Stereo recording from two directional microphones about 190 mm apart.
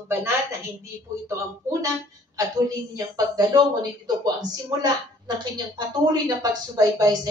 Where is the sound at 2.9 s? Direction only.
20° right (ahead or behind).